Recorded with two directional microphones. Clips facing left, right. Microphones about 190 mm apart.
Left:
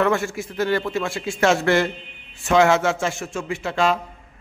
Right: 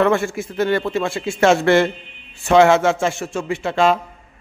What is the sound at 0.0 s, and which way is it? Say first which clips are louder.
A man's voice: right 4 dB; 25° right (ahead or behind).